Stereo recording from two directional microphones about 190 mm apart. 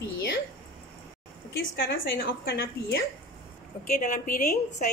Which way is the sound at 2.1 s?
55° left (ahead or behind).